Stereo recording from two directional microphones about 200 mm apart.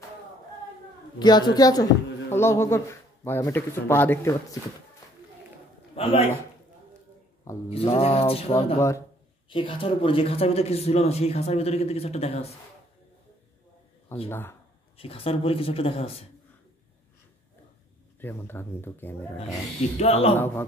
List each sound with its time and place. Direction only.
1.2 s speech: 20° left (ahead or behind)
5.9 s speech: 30° left (ahead or behind)
7.5 s mantra: 15° left (ahead or behind)
8.0 s speech: 30° left (ahead or behind)
8.7 s speech: 15° left (ahead or behind)
9.5 s speech: 25° left (ahead or behind)
14.1 s speech: 10° left (ahead or behind)
15.0 s speech: 30° left (ahead or behind)
18.2 s speech: 10° left (ahead or behind)
20.0 s speech: 30° left (ahead or behind)
20.3 s speech: 10° left (ahead or behind)